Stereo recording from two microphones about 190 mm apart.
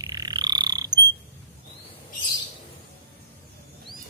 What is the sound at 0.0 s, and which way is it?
Frog, 20° right (ahead or behind).